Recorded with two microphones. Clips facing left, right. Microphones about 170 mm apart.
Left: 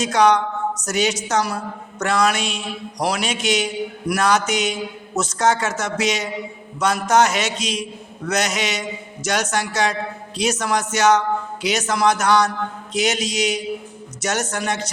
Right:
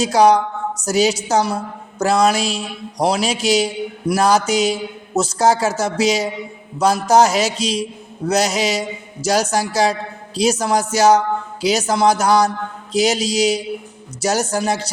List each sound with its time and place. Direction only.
0.0 s a woman's voice: 35° right (ahead or behind)